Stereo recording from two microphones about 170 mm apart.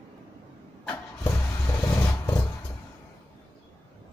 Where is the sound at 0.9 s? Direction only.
15° left (ahead or behind).